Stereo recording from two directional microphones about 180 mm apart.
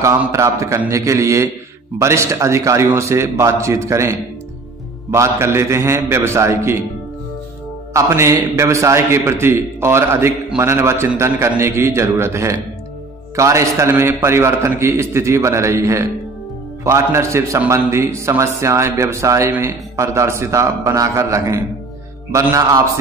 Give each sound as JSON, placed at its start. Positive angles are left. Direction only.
{"t": 0.0, "sound": "a man's voice", "side_deg": -15}
{"t": 7.9, "sound": "a man's voice", "side_deg": -15}